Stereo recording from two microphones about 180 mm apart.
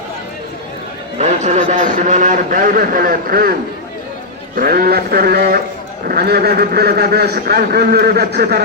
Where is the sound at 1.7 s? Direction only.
45° right (ahead or behind).